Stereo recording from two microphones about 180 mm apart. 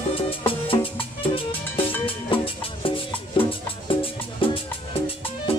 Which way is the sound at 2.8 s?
30° left (ahead or behind).